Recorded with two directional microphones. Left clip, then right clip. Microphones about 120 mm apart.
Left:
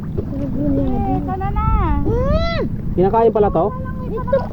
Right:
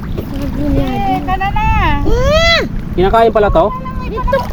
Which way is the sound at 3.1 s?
30° right (ahead or behind).